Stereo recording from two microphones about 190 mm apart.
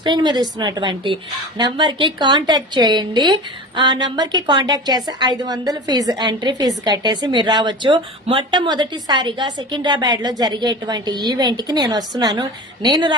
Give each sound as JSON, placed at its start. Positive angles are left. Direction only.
{"t": 0.0, "sound": "a woman's voice", "side_deg": -25}